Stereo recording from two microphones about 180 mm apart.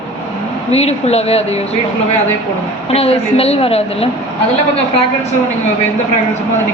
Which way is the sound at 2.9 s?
35° left (ahead or behind).